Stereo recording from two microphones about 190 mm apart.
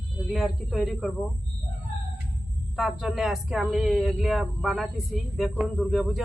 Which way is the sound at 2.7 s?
Centre (ahead or behind).